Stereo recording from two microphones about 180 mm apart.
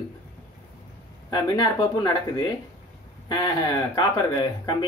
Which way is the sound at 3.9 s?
25° left (ahead or behind).